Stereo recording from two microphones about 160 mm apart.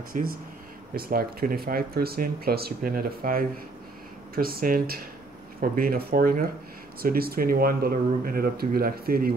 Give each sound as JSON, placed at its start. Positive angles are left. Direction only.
{"t": 0.1, "sound": "speech", "side_deg": -65}